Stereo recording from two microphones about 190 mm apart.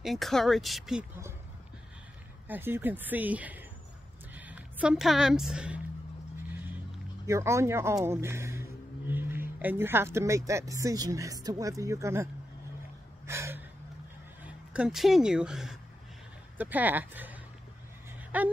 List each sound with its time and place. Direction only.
0.0 s speech: centre (ahead or behind)
2.4 s a woman's voice: 10° right (ahead or behind)
7.2 s speech: 15° right (ahead or behind)
13.3 s gasp: 15° right (ahead or behind)
14.4 s speech: 5° right (ahead or behind)